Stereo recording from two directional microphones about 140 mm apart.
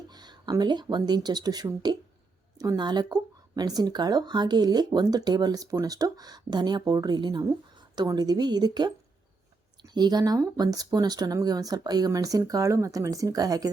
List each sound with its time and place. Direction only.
0.1 s speech: 30° right (ahead or behind)